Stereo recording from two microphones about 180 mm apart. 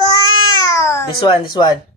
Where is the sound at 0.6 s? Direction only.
15° left (ahead or behind).